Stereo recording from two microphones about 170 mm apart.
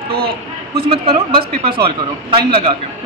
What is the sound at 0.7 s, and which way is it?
A man's voice, 35° right (ahead or behind).